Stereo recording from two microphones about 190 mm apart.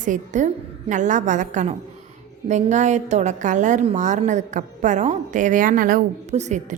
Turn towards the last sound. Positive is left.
turn(degrees=-35)  # may be behind; listen again after turning